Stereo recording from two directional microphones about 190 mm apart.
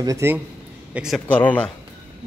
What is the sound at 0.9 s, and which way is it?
Speech, centre (ahead or behind).